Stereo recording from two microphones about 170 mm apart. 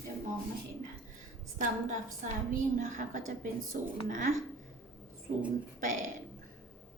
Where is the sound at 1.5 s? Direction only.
50° right (ahead or behind).